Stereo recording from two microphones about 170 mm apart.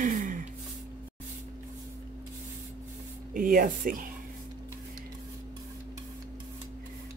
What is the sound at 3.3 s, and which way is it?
Speech, 55° right (ahead or behind).